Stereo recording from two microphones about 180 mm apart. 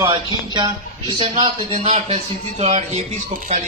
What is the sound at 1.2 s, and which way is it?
A man's voice, 35° right (ahead or behind).